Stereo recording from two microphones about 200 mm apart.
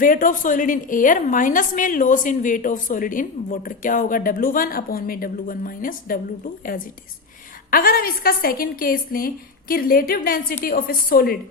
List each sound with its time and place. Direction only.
0.0 s a woman's voice: 45° left (ahead or behind)